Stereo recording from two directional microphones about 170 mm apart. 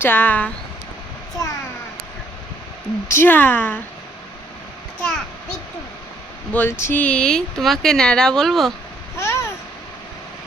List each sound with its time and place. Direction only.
0.0 s speech: 10° left (ahead or behind)
1.4 s a sound: 20° left (ahead or behind)
3.1 s speech: 10° left (ahead or behind)
4.9 s a sound: 5° left (ahead or behind)
6.5 s speech: 10° left (ahead or behind)
9.1 s babbling: 15° left (ahead or behind)